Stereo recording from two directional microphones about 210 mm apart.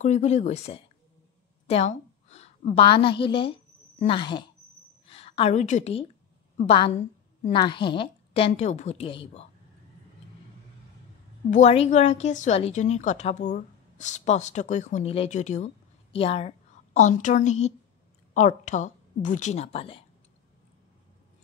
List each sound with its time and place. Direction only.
0.0 s a woman's voice: 35° left (ahead or behind)
7.5 s a woman's voice: 20° left (ahead or behind)
11.5 s a woman's voice: 30° left (ahead or behind)